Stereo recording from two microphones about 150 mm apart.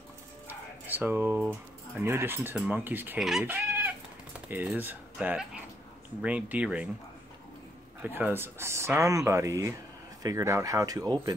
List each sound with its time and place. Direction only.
0.5 s speech: 10° right (ahead or behind)
3.4 s chicken: 10° right (ahead or behind)
4.5 s speech: 10° right (ahead or behind)
8.0 s speech: 15° right (ahead or behind)